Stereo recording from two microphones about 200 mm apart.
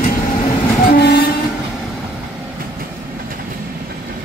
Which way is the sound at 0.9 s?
55° left (ahead or behind).